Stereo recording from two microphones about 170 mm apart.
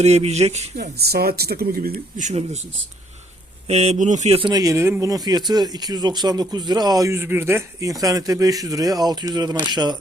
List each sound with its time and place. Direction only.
0.0 s speech: 40° right (ahead or behind)
0.8 s speech: 70° right (ahead or behind); by 2.6 s 40° right (ahead or behind)
3.7 s speech: 40° right (ahead or behind)